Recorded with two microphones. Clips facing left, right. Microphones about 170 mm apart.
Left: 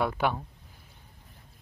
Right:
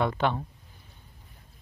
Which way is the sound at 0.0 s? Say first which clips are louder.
Right 1 dB; 5° left (ahead or behind).